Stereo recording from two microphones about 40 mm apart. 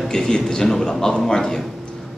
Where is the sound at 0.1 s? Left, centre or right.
Centre.